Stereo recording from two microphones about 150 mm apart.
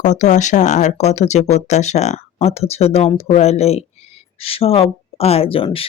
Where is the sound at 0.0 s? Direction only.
55° left (ahead or behind).